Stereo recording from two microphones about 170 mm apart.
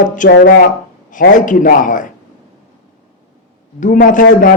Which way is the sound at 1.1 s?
50° left (ahead or behind).